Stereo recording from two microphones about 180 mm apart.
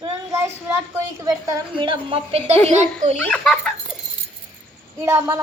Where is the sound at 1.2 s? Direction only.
25° right (ahead or behind); by 3.2 s 40° right (ahead or behind).